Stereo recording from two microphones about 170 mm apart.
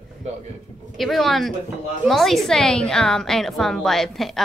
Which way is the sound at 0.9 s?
Centre (ahead or behind).